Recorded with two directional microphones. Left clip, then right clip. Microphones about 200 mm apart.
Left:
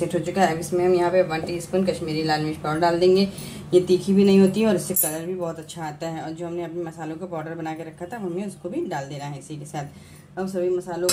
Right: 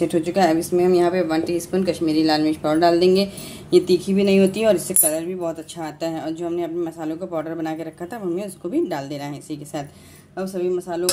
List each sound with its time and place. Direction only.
0.1 s a woman's voice: 55° right (ahead or behind)